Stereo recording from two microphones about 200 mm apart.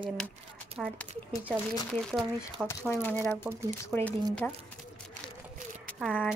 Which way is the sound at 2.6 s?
10° left (ahead or behind).